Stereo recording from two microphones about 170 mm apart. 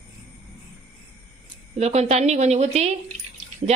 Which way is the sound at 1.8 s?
40° right (ahead or behind).